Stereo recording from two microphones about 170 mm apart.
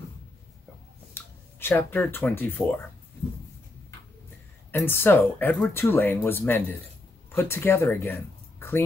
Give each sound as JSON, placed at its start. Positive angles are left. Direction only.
{"t": 1.1, "sound": "speech", "side_deg": 15}
{"t": 4.6, "sound": "speech", "side_deg": 15}